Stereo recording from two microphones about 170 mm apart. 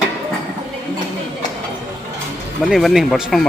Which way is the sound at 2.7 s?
Centre (ahead or behind).